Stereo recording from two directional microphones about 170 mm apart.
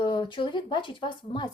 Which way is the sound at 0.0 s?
30° left (ahead or behind).